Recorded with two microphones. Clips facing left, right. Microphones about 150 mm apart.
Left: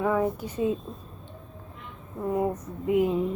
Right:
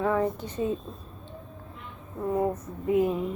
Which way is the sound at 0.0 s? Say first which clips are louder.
Left 1 dB; 10° left (ahead or behind).